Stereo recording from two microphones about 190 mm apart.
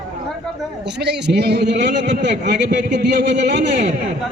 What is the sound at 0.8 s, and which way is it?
Speech, 60° right (ahead or behind).